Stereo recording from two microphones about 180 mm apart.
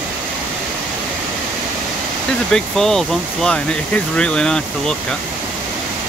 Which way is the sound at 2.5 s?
Centre (ahead or behind).